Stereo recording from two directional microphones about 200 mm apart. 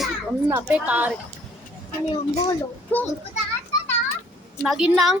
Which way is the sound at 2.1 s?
30° left (ahead or behind).